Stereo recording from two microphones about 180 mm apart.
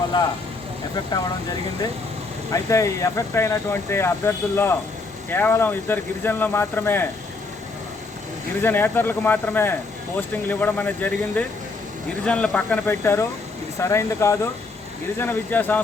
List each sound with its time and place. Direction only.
0.1 s speech: 25° left (ahead or behind)
2.5 s speech: 15° left (ahead or behind)
8.6 s speech: 10° left (ahead or behind)